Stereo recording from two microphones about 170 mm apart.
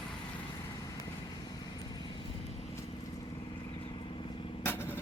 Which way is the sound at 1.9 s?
25° left (ahead or behind).